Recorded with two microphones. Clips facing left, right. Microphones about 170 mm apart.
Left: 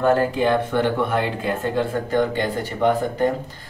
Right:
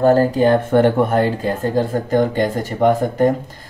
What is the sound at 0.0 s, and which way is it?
Speech, 40° right (ahead or behind).